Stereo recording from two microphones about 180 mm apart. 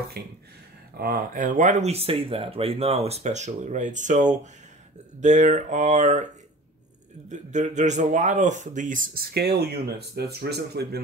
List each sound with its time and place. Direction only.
0.2 s a man's voice: 60° right (ahead or behind); by 6.2 s 40° right (ahead or behind)
7.2 s a man's voice: 40° right (ahead or behind); by 11.0 s 65° right (ahead or behind)